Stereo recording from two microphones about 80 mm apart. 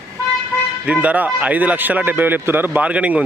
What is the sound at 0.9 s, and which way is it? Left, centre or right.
Speech, centre.